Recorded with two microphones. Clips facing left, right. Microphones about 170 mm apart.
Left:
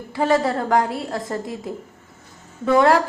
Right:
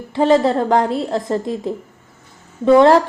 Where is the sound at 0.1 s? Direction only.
25° right (ahead or behind).